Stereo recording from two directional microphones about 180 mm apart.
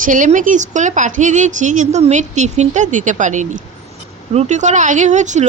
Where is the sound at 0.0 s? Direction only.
45° right (ahead or behind).